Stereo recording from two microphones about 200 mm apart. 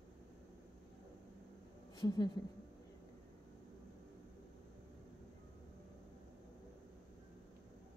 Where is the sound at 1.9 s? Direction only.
20° left (ahead or behind).